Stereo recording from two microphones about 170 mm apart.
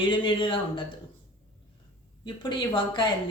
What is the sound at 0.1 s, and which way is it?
Speech, 30° left (ahead or behind).